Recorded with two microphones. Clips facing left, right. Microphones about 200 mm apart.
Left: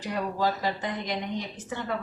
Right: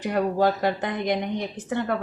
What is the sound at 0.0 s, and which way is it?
A woman's voice, 55° right (ahead or behind).